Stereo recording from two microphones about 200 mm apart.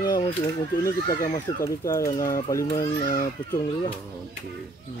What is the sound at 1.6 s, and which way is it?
Speech, 15° left (ahead or behind).